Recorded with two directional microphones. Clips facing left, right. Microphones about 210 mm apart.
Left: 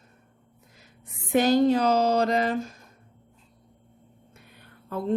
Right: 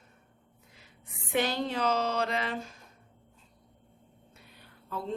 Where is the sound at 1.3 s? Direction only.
40° left (ahead or behind).